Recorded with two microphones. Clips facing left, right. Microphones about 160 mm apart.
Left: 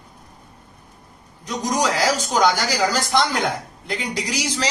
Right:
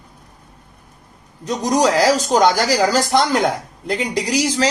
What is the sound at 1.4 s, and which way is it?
Speech, 40° right (ahead or behind).